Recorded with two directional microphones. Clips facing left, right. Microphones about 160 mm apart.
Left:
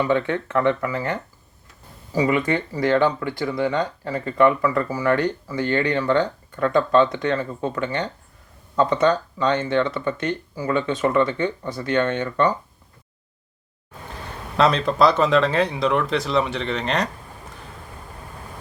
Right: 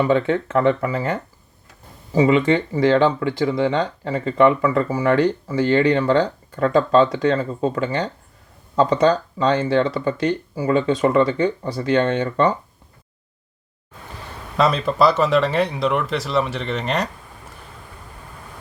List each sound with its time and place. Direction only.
0.0 s speech: 20° right (ahead or behind)
14.5 s speech: 5° right (ahead or behind)